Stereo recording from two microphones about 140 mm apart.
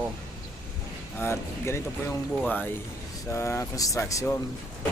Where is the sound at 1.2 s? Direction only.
20° left (ahead or behind).